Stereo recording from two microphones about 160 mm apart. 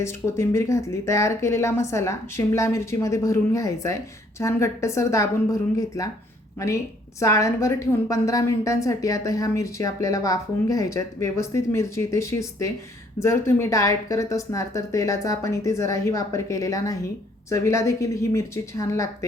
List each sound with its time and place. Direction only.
0.0 s speech: 15° left (ahead or behind)
7.2 s speech: 20° left (ahead or behind)